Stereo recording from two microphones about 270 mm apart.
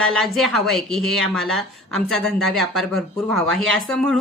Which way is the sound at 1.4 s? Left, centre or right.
Centre.